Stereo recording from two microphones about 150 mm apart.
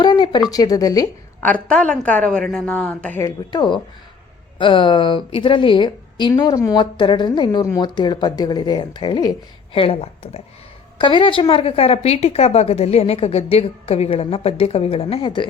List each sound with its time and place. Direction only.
0.0 s a sound: 30° left (ahead or behind)
0.5 s speech: 25° left (ahead or behind)
1.7 s a woman's voice: 10° left (ahead or behind)
3.2 s a woman's voice: 25° left (ahead or behind)